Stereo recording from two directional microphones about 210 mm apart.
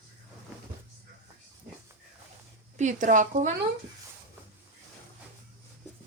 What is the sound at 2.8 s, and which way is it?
Speech, 35° right (ahead or behind).